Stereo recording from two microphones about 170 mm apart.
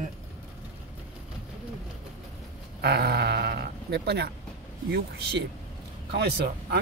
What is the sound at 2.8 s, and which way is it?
Sheep, 70° right (ahead or behind).